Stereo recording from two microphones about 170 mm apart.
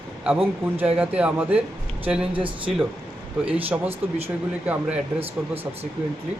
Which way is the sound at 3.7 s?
10° right (ahead or behind).